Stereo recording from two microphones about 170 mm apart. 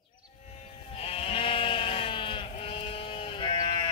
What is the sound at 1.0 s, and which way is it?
Sheep, 35° left (ahead or behind).